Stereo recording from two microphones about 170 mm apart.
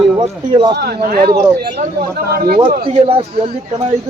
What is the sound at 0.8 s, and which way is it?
Speech, 65° right (ahead or behind).